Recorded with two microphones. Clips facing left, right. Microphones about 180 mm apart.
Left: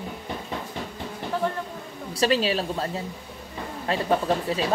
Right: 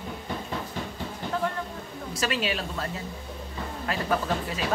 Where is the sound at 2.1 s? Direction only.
35° left (ahead or behind).